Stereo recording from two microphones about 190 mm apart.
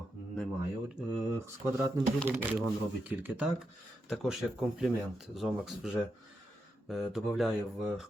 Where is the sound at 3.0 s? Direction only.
10° right (ahead or behind).